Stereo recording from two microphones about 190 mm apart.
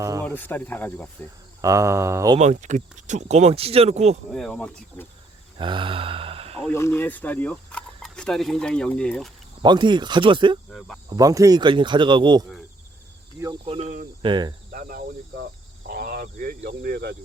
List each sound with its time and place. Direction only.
0.3 s speech: 10° left (ahead or behind)
1.6 s speech: 15° right (ahead or behind)
2.4 s speech: 40° right (ahead or behind)
4.3 s speech: 5° left (ahead or behind)
5.5 s speech: 25° right (ahead or behind)
6.7 s speech: 15° left (ahead or behind)
9.6 s speech: 25° right (ahead or behind)
10.7 s speech: centre (ahead or behind)
11.1 s speech: 20° right (ahead or behind)
13.7 s speech: 40° right (ahead or behind)
14.2 s speech: 25° right (ahead or behind)
14.7 s speech: 50° right (ahead or behind)
15.9 s cricket: 50° right (ahead or behind)
16.6 s speech: 55° right (ahead or behind)